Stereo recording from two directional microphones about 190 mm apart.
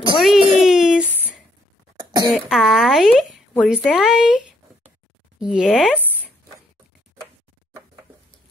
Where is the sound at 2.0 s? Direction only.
25° right (ahead or behind).